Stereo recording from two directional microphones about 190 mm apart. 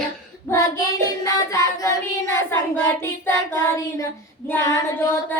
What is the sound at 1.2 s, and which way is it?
Child singing, 15° left (ahead or behind).